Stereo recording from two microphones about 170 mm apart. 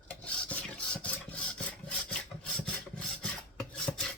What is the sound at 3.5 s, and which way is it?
Filing, 5° left (ahead or behind).